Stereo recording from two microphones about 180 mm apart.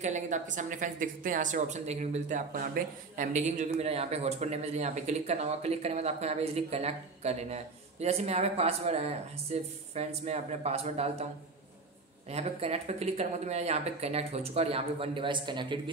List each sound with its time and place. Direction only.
0.0 s a woman's voice: 45° right (ahead or behind)
12.3 s a woman's voice: 35° right (ahead or behind)